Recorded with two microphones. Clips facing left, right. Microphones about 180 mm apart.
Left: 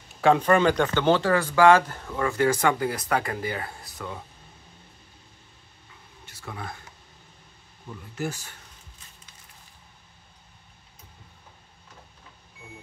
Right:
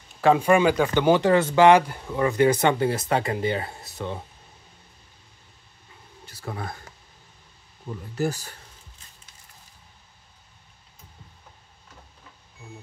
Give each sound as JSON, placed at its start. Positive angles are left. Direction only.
{"t": 0.2, "sound": "speech", "side_deg": -5}
{"t": 6.2, "sound": "a sound", "side_deg": -35}
{"t": 8.2, "sound": "speech", "side_deg": -35}